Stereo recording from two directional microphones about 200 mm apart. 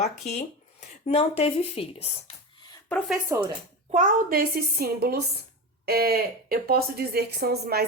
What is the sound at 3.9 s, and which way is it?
Speech, 45° right (ahead or behind).